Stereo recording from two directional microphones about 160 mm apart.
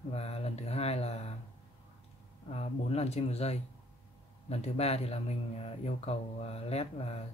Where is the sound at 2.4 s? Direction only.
40° left (ahead or behind).